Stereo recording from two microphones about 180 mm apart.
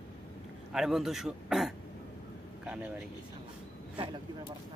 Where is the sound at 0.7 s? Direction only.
Centre (ahead or behind).